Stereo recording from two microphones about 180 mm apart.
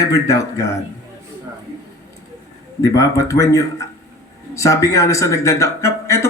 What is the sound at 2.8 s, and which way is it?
A man's voice, 20° left (ahead or behind).